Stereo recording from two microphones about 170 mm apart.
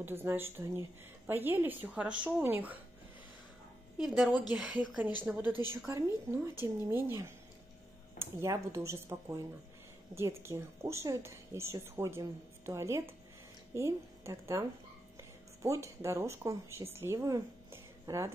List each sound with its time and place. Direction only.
0.0 s a woman's voice: 15° right (ahead or behind)
4.0 s a woman's voice: 5° right (ahead or behind)